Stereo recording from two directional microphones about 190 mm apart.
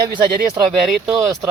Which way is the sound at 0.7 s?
Centre (ahead or behind).